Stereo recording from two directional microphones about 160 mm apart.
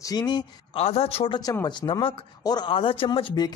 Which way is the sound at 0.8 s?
40° left (ahead or behind).